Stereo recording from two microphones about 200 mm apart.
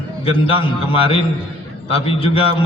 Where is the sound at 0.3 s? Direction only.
25° left (ahead or behind).